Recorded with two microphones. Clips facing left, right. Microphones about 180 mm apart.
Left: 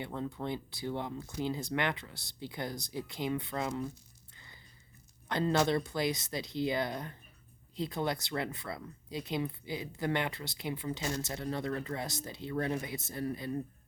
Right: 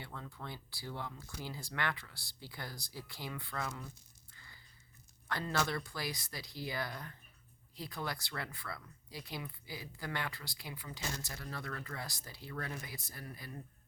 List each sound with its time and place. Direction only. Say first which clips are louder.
0.0 s speech: left 10 dB; 25° left (ahead or behind)
4.4 s a sound: left 3 dB; 20° left (ahead or behind)
5.3 s speech: left 8 dB; 20° left (ahead or behind)